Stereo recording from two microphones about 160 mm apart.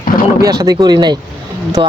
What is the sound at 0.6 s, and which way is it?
Speech, 25° right (ahead or behind).